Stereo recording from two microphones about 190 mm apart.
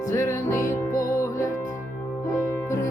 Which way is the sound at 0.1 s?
15° left (ahead or behind).